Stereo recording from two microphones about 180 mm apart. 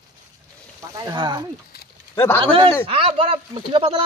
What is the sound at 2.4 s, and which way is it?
Speech, 30° right (ahead or behind).